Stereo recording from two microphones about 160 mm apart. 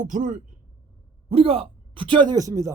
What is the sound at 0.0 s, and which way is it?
Speech, 50° right (ahead or behind).